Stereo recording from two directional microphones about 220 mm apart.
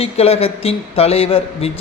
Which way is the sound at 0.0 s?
25° left (ahead or behind).